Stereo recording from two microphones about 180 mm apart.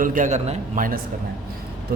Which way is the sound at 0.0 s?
50° right (ahead or behind).